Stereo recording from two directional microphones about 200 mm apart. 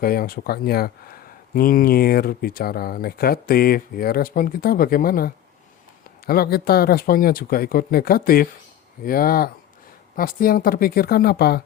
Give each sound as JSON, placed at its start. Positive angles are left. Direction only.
{"t": 0.0, "sound": "speech", "side_deg": 45}